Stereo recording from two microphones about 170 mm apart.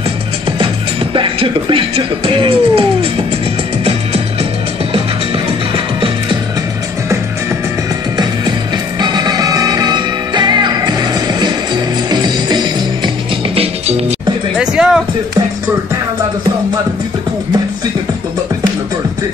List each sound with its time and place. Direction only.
1.1 s speech: 30° right (ahead or behind)
9.0 s music: 25° right (ahead or behind)
13.6 s music: 40° right (ahead or behind)
14.6 s music: 5° right (ahead or behind)